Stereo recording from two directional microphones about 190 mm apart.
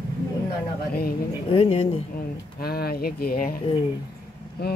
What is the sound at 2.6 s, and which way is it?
Speech, 55° left (ahead or behind).